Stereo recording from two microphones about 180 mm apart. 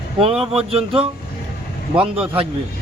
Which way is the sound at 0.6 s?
30° right (ahead or behind).